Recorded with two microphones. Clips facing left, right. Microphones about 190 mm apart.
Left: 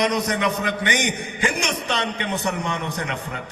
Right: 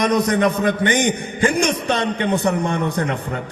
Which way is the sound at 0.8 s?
15° left (ahead or behind).